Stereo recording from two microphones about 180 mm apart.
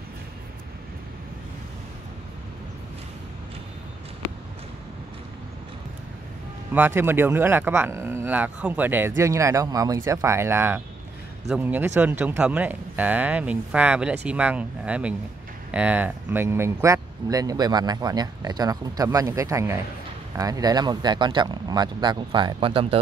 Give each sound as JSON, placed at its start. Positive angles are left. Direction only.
{"t": 6.7, "sound": "speech", "side_deg": -10}